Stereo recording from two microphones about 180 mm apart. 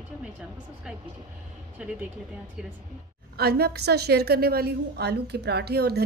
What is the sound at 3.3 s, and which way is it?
A woman's voice, 60° right (ahead or behind).